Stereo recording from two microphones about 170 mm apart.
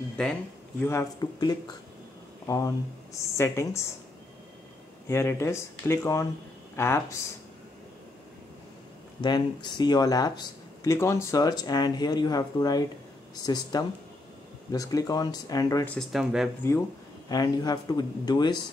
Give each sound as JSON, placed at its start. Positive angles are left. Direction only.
{"t": 0.2, "sound": "speech", "side_deg": 5}
{"t": 0.8, "sound": "speech", "side_deg": 20}
{"t": 5.0, "sound": "speech", "side_deg": 15}
{"t": 9.2, "sound": "speech", "side_deg": 25}
{"t": 15.9, "sound": "speech", "side_deg": 0}
{"t": 17.3, "sound": "speech", "side_deg": 25}